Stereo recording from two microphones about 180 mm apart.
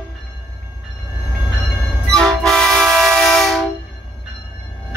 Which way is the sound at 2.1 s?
5° left (ahead or behind).